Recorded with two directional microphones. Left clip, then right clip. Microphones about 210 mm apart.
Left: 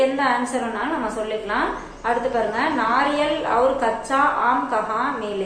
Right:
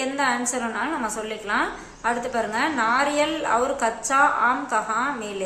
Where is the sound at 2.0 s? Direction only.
30° right (ahead or behind).